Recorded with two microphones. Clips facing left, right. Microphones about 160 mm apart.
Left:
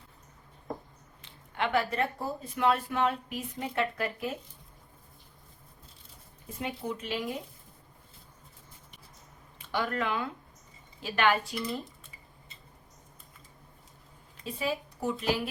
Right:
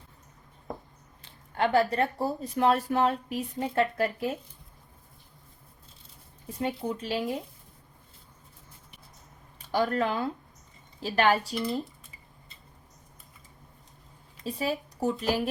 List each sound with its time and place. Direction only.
1.5 s a woman's voice: 35° right (ahead or behind)
6.6 s a woman's voice: 30° right (ahead or behind)
9.6 s a woman's voice: 35° right (ahead or behind)
14.4 s a woman's voice: 40° right (ahead or behind)